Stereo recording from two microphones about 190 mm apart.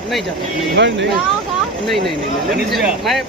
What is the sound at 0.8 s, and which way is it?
Speech, 65° right (ahead or behind).